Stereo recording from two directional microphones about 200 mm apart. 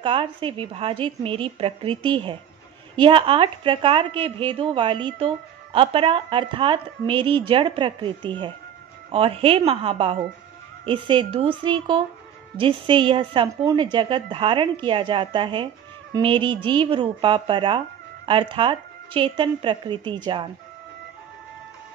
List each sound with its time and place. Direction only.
0.0 s a woman's voice: 25° right (ahead or behind)